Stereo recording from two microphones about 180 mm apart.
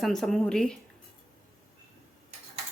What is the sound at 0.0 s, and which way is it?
Speech, centre (ahead or behind).